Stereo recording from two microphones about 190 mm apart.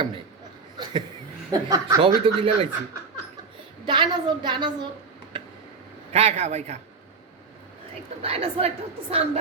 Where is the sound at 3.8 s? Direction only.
25° right (ahead or behind).